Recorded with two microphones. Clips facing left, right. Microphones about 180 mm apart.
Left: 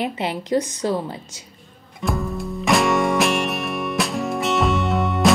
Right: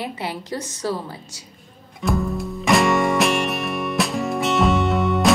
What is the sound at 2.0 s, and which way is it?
Music, centre (ahead or behind).